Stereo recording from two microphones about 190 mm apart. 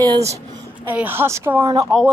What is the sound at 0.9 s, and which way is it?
Speech, 10° right (ahead or behind).